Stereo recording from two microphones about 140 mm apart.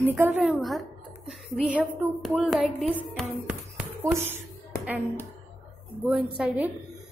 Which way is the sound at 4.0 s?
20° right (ahead or behind).